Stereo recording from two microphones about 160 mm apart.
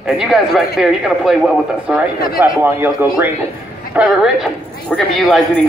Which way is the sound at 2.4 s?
15° right (ahead or behind).